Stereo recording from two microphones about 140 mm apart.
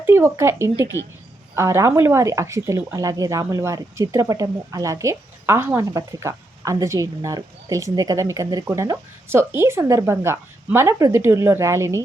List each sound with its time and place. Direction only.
0.0 s speech: 20° right (ahead or behind)